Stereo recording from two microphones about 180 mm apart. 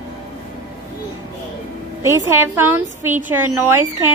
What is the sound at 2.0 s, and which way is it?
A woman's voice, 15° right (ahead or behind).